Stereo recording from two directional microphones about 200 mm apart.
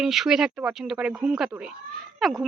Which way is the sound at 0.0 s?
Centre (ahead or behind).